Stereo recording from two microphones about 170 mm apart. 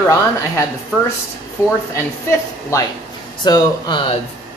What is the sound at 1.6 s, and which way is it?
Speech, 20° left (ahead or behind).